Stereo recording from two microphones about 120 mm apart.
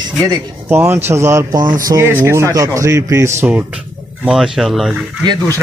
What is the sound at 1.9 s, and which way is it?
A man's voice, 20° right (ahead or behind).